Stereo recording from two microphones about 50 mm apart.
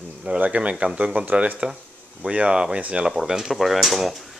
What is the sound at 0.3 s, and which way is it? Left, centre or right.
Speech, right.